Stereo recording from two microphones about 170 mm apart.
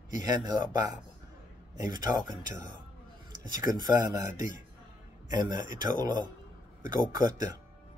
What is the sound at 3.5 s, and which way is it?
Speech, 25° right (ahead or behind).